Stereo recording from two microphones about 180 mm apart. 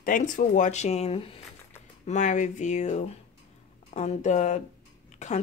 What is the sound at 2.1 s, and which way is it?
Speech, 45° left (ahead or behind).